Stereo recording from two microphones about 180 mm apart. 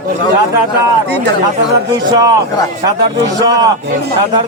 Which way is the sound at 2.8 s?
20° right (ahead or behind).